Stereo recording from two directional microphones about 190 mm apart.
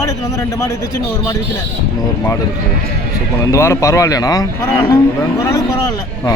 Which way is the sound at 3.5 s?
15° left (ahead or behind).